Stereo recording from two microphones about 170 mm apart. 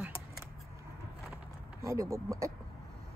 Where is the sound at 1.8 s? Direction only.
20° right (ahead or behind).